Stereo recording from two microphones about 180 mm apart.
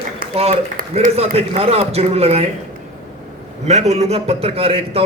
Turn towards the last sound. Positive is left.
turn(degrees=-35)  # may be behind; listen again after turning